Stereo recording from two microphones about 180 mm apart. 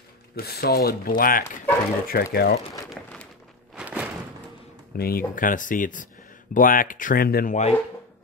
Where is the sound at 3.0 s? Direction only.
5° left (ahead or behind).